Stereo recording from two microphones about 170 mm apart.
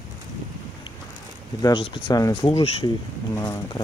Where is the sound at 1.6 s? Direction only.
25° left (ahead or behind).